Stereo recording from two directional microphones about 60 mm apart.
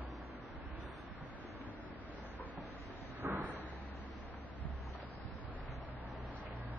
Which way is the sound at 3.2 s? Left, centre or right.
Right.